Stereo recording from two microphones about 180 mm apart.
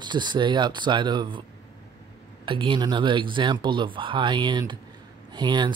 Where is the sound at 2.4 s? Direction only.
30° right (ahead or behind).